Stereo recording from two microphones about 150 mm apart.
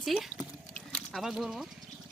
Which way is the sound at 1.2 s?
5° right (ahead or behind).